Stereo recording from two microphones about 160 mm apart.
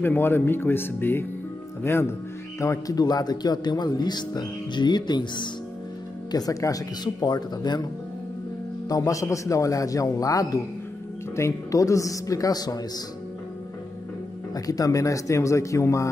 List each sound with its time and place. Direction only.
0.0 s speech: 15° left (ahead or behind)
8.8 s speech: 20° left (ahead or behind)
14.5 s speech: 20° left (ahead or behind)